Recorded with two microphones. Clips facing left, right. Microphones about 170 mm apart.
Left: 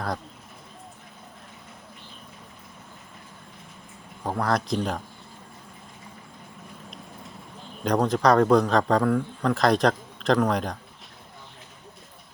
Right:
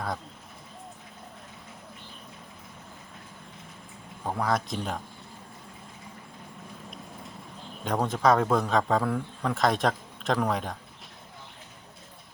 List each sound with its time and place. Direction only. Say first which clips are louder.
4.4 s speech: left 4 dB; 5° right (ahead or behind)
6.9 s clip-clop: even; centre (ahead or behind)
7.9 s speech: left 3 dB; 5° right (ahead or behind)